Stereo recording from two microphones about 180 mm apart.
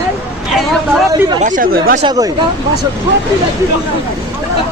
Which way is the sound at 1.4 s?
45° right (ahead or behind).